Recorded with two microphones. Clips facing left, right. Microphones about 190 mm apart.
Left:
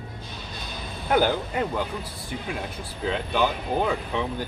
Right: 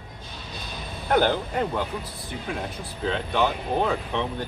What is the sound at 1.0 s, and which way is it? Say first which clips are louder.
Speech: even; 5° left (ahead or behind).